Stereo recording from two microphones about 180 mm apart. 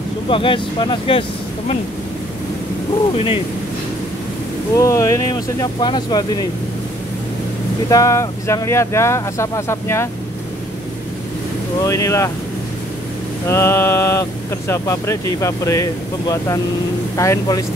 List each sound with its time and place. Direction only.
0.3 s speech: 30° left (ahead or behind)
4.7 s speech: 15° left (ahead or behind)
7.9 s speech: 15° left (ahead or behind)
11.8 s speech: 15° left (ahead or behind)
13.5 s speech: 15° left (ahead or behind)